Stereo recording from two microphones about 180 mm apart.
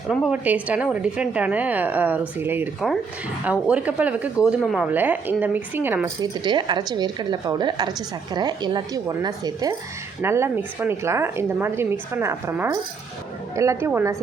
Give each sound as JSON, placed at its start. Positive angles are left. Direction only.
{"t": 0.1, "sound": "speech", "side_deg": -5}
{"t": 6.4, "sound": "a woman's voice", "side_deg": -25}